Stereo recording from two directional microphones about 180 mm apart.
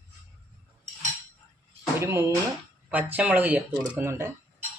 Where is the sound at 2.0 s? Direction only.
15° right (ahead or behind).